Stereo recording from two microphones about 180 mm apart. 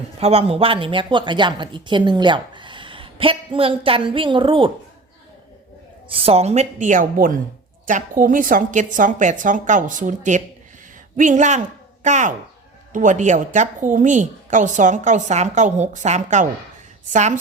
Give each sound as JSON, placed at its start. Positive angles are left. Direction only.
{"t": 0.2, "sound": "speech", "side_deg": -35}
{"t": 6.1, "sound": "a woman's voice", "side_deg": -35}